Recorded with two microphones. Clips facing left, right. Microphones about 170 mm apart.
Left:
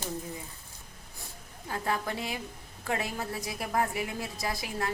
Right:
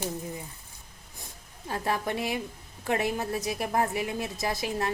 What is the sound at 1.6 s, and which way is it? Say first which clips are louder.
A woman's voice: right 2 dB; 25° right (ahead or behind).